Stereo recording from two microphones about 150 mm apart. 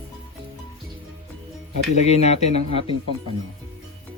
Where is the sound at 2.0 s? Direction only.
45° left (ahead or behind).